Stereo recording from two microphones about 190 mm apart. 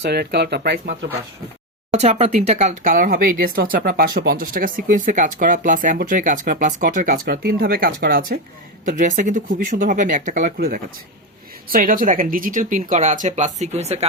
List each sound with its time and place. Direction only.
0.0 s speech: 55° right (ahead or behind)
1.9 s speech: 35° right (ahead or behind)